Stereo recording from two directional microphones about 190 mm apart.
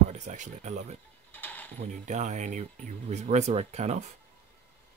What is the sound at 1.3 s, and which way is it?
Pulleys, 10° left (ahead or behind).